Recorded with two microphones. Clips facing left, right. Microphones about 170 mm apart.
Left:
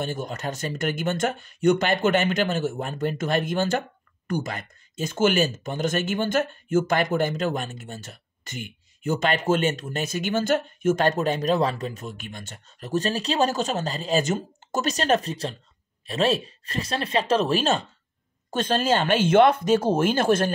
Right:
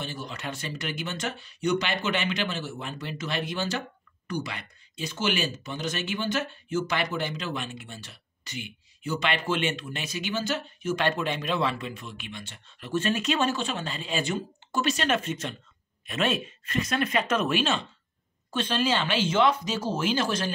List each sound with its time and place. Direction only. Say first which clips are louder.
0.0 s speech: left 6 dB; 50° left (ahead or behind)